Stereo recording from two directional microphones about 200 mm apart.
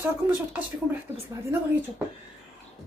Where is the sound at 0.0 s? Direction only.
10° right (ahead or behind).